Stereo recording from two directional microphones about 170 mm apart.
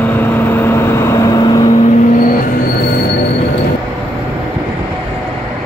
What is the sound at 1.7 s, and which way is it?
Vehicle, 40° left (ahead or behind).